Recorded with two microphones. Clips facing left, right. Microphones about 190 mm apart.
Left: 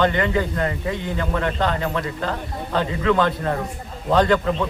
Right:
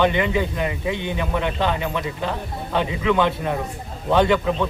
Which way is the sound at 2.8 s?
10° right (ahead or behind).